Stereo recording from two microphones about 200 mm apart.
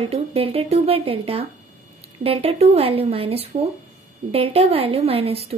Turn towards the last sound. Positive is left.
turn(degrees=-30)  # may be behind; listen again after turning